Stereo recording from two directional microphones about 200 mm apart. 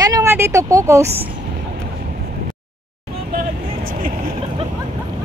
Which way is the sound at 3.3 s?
45° right (ahead or behind).